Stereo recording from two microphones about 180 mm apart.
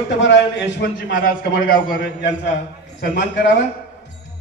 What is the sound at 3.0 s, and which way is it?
Speech, 70° left (ahead or behind).